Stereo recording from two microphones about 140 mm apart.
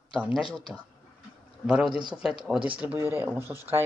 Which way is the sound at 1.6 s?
5° right (ahead or behind).